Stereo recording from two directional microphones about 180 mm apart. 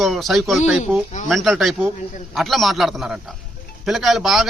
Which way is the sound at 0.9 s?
15° right (ahead or behind).